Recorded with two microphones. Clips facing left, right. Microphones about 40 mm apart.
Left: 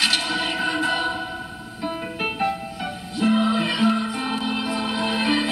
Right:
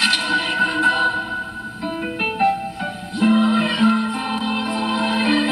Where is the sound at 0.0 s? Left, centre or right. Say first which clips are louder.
Right 3 dB; centre.